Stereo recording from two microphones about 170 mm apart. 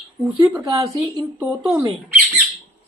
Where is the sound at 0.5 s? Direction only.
20° right (ahead or behind).